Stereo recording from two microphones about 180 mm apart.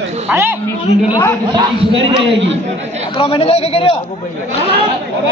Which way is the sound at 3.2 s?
30° left (ahead or behind).